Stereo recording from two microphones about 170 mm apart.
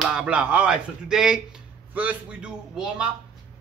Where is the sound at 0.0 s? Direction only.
5° right (ahead or behind).